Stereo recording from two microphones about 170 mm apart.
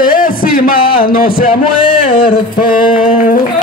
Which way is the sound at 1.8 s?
30° left (ahead or behind).